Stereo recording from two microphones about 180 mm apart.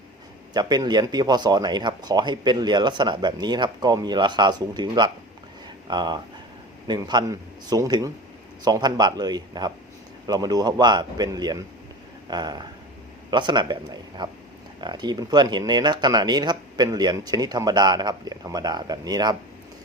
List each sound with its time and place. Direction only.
0.5 s speech: 20° right (ahead or behind)